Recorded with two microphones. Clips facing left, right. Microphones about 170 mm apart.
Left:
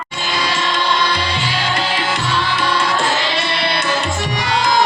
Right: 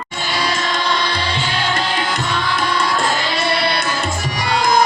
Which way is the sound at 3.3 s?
40° right (ahead or behind).